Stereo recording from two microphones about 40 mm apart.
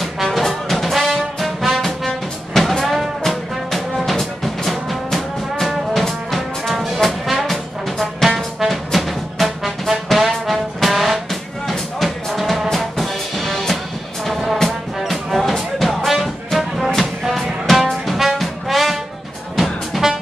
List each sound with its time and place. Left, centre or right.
0.0 s brass instrument: centre
2.8 s music: centre
8.0 s brass instrument: centre
11.6 s music: centre
15.0 s music: centre